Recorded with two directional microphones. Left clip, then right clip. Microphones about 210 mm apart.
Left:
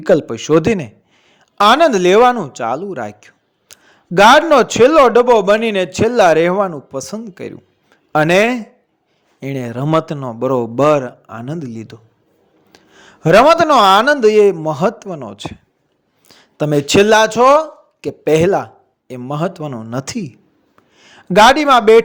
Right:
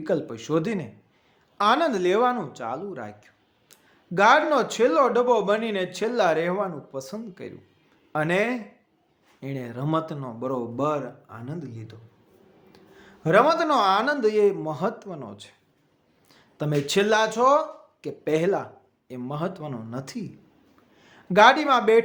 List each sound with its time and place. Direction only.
0.0 s speech: 40° left (ahead or behind)